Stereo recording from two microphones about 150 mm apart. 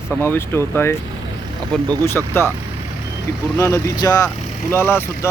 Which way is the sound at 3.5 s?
20° left (ahead or behind).